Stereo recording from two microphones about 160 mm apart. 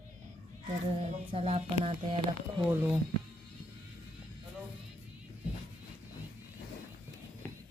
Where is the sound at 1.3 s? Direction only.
40° right (ahead or behind).